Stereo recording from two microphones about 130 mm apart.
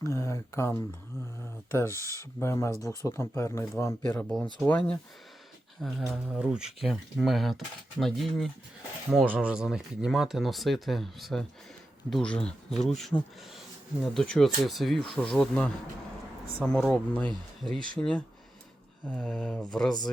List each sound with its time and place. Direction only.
0.0 s speech: 20° left (ahead or behind)
4.2 s speech: centre (ahead or behind)
5.8 s speech: centre (ahead or behind)
9.0 s speech: 10° right (ahead or behind); by 17.3 s 10° left (ahead or behind)
17.7 s speech: 40° right (ahead or behind)
19.0 s speech: 5° left (ahead or behind)